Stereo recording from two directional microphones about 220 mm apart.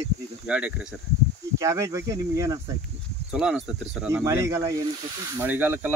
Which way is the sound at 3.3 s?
5° right (ahead or behind).